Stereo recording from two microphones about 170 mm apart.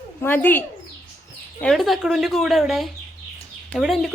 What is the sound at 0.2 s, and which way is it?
Speech, 10° left (ahead or behind).